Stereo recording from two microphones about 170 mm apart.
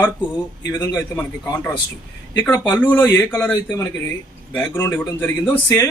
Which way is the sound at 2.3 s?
10° left (ahead or behind).